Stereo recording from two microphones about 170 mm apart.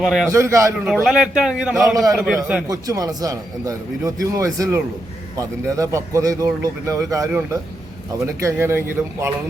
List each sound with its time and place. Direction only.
0.0 s a man's voice: centre (ahead or behind)
0.3 s a man's voice: 15° right (ahead or behind)
0.9 s a man's voice: centre (ahead or behind)
2.6 s a man's voice: 20° right (ahead or behind)